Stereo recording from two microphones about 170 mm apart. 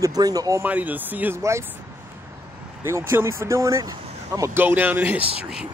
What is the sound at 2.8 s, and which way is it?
Speech, 15° right (ahead or behind).